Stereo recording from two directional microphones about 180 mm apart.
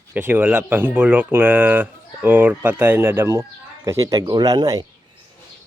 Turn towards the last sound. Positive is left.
turn(degrees=-20)  # may be behind; listen again after turning